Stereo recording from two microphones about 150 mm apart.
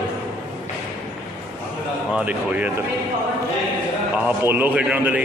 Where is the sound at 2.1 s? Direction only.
10° right (ahead or behind).